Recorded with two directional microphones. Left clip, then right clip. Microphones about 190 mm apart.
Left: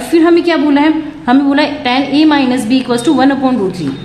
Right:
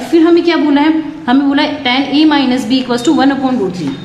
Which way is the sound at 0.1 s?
20° left (ahead or behind).